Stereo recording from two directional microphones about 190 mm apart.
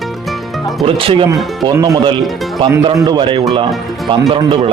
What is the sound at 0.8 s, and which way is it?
Speech, 30° right (ahead or behind).